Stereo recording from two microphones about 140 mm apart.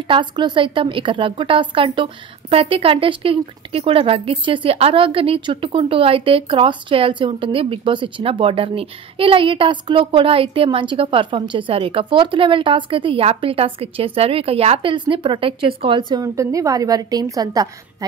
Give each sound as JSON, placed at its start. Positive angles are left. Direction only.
{"t": 0.1, "sound": "speech", "side_deg": -35}
{"t": 16.3, "sound": "a woman's voice", "side_deg": -25}